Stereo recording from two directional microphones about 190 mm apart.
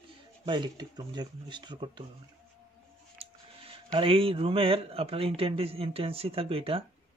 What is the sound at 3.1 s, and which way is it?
Speech, 30° right (ahead or behind).